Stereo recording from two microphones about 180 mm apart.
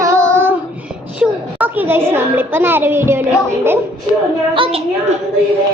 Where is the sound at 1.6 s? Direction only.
10° right (ahead or behind).